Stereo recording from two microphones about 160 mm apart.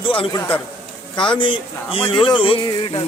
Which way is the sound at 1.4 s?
30° left (ahead or behind).